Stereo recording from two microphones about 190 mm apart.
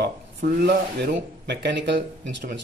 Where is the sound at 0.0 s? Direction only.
60° right (ahead or behind).